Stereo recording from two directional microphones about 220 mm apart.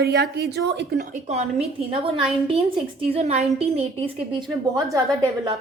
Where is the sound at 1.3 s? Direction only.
30° right (ahead or behind).